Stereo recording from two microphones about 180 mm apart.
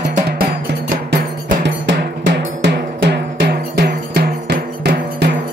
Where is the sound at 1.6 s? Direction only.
90° right; by 5.3 s 60° right (ahead or behind).